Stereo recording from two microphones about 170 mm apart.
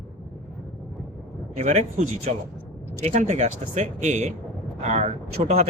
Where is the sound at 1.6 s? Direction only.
45° right (ahead or behind).